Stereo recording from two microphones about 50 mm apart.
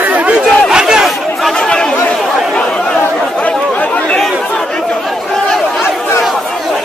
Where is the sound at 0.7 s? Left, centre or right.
Centre.